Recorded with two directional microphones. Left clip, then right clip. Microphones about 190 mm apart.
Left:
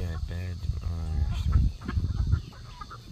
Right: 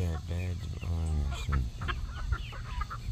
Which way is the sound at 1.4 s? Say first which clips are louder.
Right 2 dB; 5° right (ahead or behind).